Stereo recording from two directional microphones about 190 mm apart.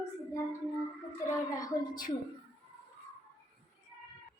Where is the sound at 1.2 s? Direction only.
20° left (ahead or behind).